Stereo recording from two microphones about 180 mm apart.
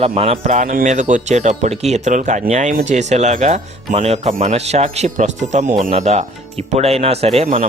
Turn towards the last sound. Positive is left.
turn(degrees=-40)  # may be behind; listen again after turning